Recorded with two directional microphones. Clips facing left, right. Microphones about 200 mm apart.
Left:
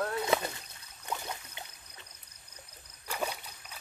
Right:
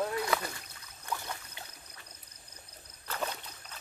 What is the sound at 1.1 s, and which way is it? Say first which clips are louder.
Boat: left 1 dB; 20° left (ahead or behind).